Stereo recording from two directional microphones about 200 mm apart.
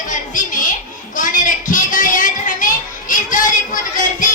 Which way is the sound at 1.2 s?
40° left (ahead or behind).